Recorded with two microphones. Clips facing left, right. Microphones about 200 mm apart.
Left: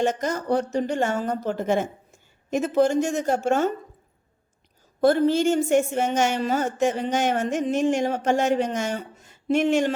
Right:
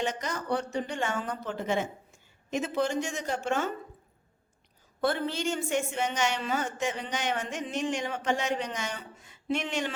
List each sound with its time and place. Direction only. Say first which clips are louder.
0.0 s a woman's voice: left 8 dB; 45° left (ahead or behind)
4.9 s a woman's voice: left 11 dB; 40° left (ahead or behind)